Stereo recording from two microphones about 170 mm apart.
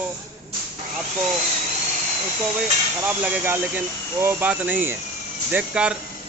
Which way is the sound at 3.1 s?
10° right (ahead or behind).